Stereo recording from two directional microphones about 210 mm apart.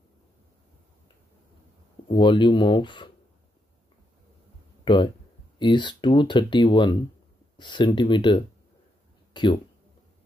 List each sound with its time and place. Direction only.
2.0 s speech: 20° left (ahead or behind)
4.8 s speech: 20° left (ahead or behind)